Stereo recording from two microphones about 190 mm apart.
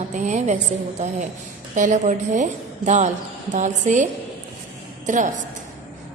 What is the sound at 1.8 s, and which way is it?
A woman's voice, 40° right (ahead or behind).